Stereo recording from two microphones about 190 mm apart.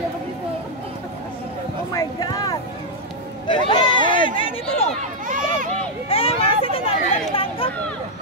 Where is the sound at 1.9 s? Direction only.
20° left (ahead or behind).